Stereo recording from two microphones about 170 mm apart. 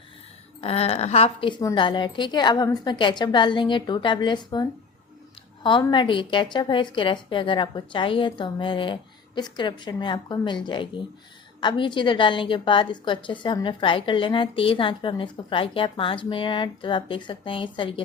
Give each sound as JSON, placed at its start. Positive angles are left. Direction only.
{"t": 0.6, "sound": "a woman's voice", "side_deg": 35}
{"t": 5.8, "sound": "a woman's voice", "side_deg": 30}